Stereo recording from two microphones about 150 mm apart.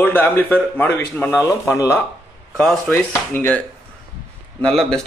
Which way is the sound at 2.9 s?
15° left (ahead or behind).